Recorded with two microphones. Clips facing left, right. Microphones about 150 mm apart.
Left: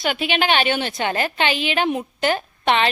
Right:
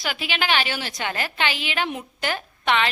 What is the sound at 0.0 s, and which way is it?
A woman's voice, 25° left (ahead or behind).